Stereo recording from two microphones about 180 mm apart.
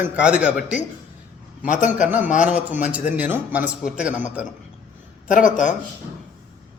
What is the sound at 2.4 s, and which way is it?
A man's voice, 5° right (ahead or behind).